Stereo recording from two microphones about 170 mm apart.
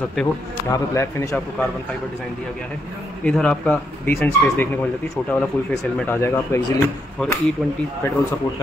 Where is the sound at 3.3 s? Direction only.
5° left (ahead or behind).